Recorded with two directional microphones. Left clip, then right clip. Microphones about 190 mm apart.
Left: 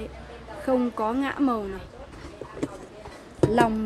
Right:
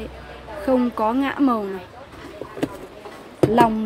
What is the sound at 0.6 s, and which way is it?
Speech, centre (ahead or behind).